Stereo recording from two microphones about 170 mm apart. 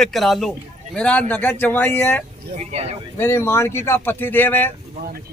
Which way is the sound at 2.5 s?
35° right (ahead or behind).